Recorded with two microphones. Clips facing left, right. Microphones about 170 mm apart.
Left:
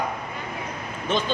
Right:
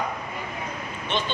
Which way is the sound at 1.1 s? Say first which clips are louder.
Left 4 dB; 40° left (ahead or behind).